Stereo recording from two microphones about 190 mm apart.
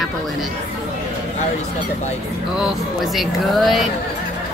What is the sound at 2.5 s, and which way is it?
A woman's voice, centre (ahead or behind).